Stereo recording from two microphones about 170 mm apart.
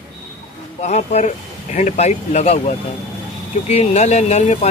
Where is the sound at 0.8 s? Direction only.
40° left (ahead or behind).